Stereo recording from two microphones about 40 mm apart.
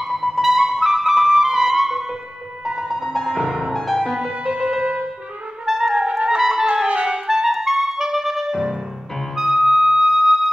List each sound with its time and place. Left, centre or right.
0.0 s music: centre
2.6 s music: centre
2.9 s music: centre
3.7 s music: centre
4.3 s music: right
6.0 s clarinet: centre
6.9 s clarinet: right
7.2 s clarinet: centre
9.4 s music: centre